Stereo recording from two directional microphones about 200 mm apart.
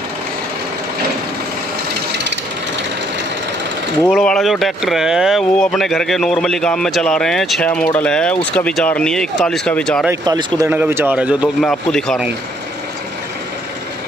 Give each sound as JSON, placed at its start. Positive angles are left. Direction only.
{"t": 4.0, "sound": "speech", "side_deg": 5}
{"t": 10.2, "sound": "a man's voice", "side_deg": -20}
{"t": 10.7, "sound": "speech", "side_deg": -10}